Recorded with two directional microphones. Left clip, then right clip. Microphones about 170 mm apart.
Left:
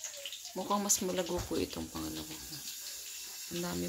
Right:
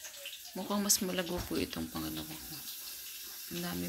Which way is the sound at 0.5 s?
5° left (ahead or behind).